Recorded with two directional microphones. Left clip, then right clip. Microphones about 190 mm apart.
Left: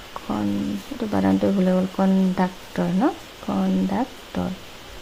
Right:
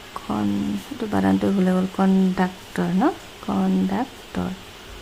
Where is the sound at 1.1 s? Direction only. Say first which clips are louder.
Even; 10° left (ahead or behind).